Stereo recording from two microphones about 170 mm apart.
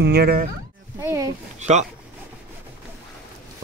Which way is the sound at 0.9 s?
15° right (ahead or behind).